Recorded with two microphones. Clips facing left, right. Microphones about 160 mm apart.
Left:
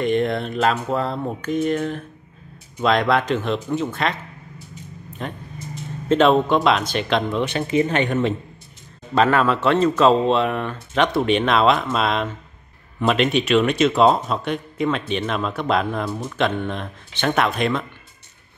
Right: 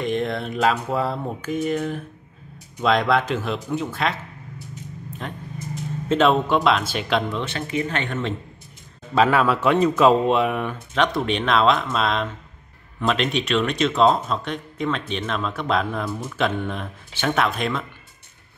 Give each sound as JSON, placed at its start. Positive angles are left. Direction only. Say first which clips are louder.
{"t": 0.0, "sound": "speech", "louder": "left 4 dB", "side_deg": 0}
{"t": 5.2, "sound": "speech", "louder": "left 2 dB", "side_deg": 0}
{"t": 7.3, "sound": "speech", "louder": "left 6 dB", "side_deg": 15}
{"t": 9.1, "sound": "speech", "louder": "left 1 dB", "side_deg": -5}
{"t": 11.0, "sound": "speech", "louder": "left 3 dB", "side_deg": 0}